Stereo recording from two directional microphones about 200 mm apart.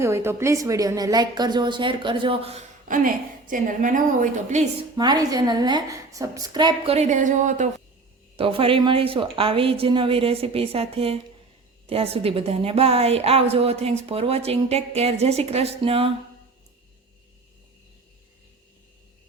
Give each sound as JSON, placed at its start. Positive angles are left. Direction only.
{"t": 0.0, "sound": "a woman's voice", "side_deg": -15}
{"t": 2.8, "sound": "a woman's voice", "side_deg": -40}
{"t": 4.9, "sound": "a woman's voice", "side_deg": -20}
{"t": 8.4, "sound": "a woman's voice", "side_deg": -25}